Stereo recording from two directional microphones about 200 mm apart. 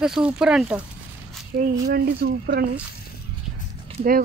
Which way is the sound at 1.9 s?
50° right (ahead or behind).